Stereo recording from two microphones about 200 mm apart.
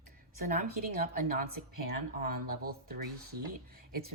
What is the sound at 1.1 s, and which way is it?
A woman's voice, 45° right (ahead or behind).